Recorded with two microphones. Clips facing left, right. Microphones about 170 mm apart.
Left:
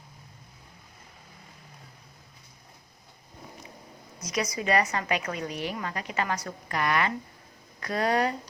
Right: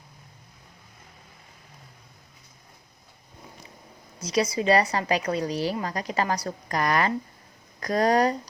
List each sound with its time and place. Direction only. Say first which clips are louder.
4.2 s a woman's voice: right 6 dB; 30° right (ahead or behind)